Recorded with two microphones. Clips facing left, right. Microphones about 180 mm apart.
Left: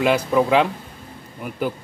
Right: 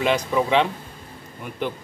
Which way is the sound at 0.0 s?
5° left (ahead or behind).